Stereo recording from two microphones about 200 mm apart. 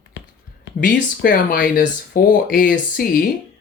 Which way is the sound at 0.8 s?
45° left (ahead or behind).